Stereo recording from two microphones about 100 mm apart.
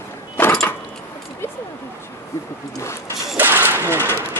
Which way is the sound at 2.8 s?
30° left (ahead or behind).